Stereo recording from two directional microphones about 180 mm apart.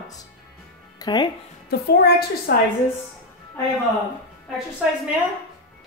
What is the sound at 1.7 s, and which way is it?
Speech, 60° left (ahead or behind).